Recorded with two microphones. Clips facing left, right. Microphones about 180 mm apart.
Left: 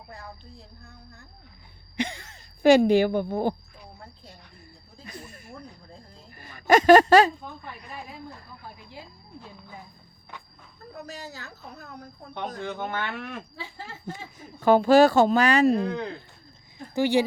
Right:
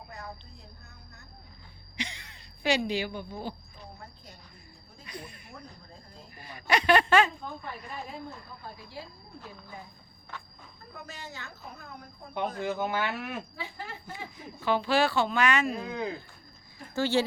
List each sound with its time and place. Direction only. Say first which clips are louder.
0.1 s a sound: left 2 dB; 30° left (ahead or behind)
2.0 s speech: left 9 dB; 50° left (ahead or behind)
5.0 s snake: left 1 dB; 45° left (ahead or behind)
6.3 s speech: left 9 dB; 45° left (ahead or behind)
8.6 s speech: right 1 dB; 15° left (ahead or behind)
10.9 s a woman's voice: left 4 dB; 40° left (ahead or behind)
12.5 s speech: right 1 dB; 5° right (ahead or behind)
14.6 s speech: left 9 dB; 45° left (ahead or behind)
15.7 s speech: left 7 dB; 10° right (ahead or behind)
16.9 s speech: left 4 dB; 15° left (ahead or behind)